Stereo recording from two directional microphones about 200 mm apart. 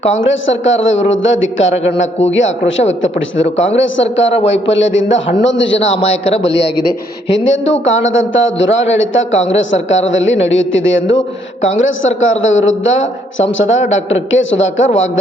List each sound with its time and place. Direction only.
0.1 s a man's voice: 70° left (ahead or behind)
6.1 s a man's voice: 30° left (ahead or behind)
6.4 s a man's voice: 65° left (ahead or behind)